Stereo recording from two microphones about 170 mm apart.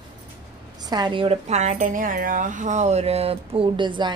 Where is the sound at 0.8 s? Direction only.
25° right (ahead or behind).